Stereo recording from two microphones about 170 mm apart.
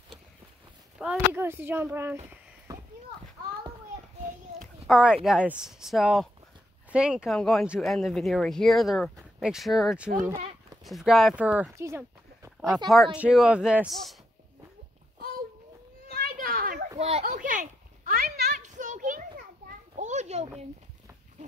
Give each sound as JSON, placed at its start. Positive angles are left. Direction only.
{"t": 0.9, "sound": "speech", "side_deg": -10}
{"t": 2.7, "sound": "a sound", "side_deg": -20}
{"t": 4.6, "sound": "speech", "side_deg": 0}
{"t": 12.7, "sound": "speech", "side_deg": 0}
{"t": 16.1, "sound": "children playing", "side_deg": -60}
{"t": 17.3, "sound": "a sound", "side_deg": -50}
{"t": 18.5, "sound": "children playing", "side_deg": -45}